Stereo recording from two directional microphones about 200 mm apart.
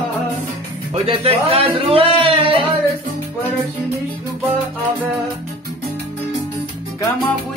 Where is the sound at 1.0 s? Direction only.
25° right (ahead or behind).